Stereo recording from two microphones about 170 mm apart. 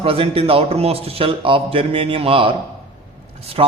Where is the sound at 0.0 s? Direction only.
35° right (ahead or behind).